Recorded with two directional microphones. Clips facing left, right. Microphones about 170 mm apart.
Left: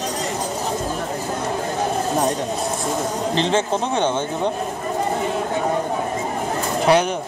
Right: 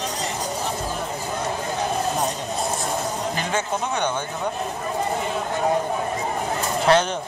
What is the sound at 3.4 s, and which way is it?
Speech, 25° left (ahead or behind).